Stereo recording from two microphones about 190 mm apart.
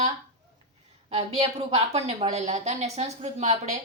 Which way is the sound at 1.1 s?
35° right (ahead or behind).